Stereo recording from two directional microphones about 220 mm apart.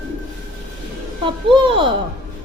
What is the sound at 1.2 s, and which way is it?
Speech, 25° right (ahead or behind).